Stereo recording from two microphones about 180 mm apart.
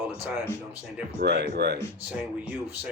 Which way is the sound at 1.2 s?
65° right (ahead or behind).